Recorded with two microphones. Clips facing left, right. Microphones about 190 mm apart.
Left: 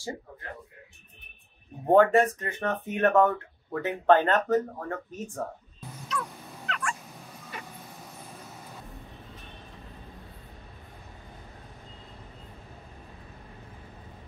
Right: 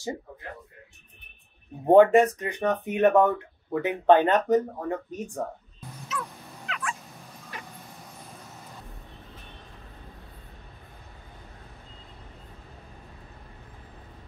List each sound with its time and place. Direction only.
1.9 s speech: 20° right (ahead or behind)
6.0 s fowl: 5° right (ahead or behind)